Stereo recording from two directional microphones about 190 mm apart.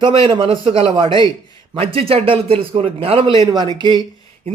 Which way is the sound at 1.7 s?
30° right (ahead or behind).